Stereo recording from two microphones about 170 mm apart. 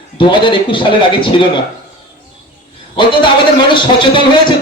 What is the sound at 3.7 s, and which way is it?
Speech, 30° left (ahead or behind).